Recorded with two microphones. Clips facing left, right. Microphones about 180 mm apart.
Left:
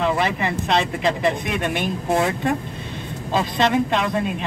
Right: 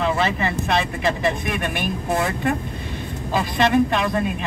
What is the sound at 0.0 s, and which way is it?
Speech, 20° left (ahead or behind).